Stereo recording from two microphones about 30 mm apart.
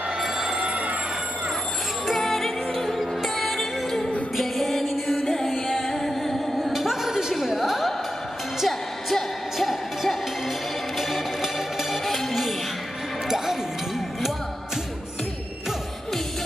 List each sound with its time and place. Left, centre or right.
0.2 s telephone bell ringing: centre
0.6 s telephone bell ringing: right
2.1 s music: centre
3.5 s music: centre
7.1 s a sound: centre
8.6 s music: centre
11.0 s music: centre